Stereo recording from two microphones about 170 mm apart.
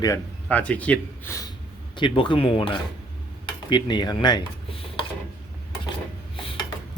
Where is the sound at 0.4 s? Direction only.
10° left (ahead or behind).